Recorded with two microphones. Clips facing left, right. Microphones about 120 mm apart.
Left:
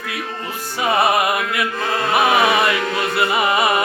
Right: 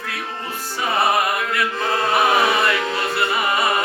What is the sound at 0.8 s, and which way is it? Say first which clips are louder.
Music: left 3 dB; 20° left (ahead or behind).